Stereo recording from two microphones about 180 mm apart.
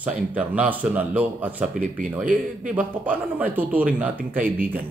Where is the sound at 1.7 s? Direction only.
45° right (ahead or behind).